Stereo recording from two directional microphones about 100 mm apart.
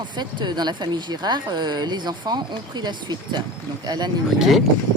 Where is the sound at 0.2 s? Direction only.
45° right (ahead or behind).